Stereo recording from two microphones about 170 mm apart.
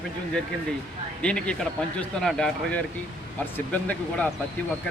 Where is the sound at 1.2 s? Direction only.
5° left (ahead or behind).